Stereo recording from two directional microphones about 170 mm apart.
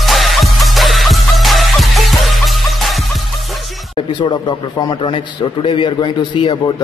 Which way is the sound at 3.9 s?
30° left (ahead or behind).